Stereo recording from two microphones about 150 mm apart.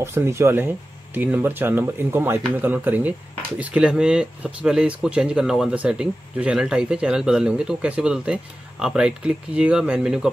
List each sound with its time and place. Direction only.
0.0 s speech: 15° right (ahead or behind)